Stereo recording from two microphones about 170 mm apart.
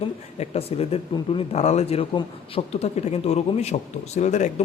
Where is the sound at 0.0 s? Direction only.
35° left (ahead or behind).